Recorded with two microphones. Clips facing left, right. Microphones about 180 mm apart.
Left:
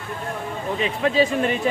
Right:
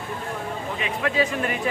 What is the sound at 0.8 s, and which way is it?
Speech, 30° left (ahead or behind).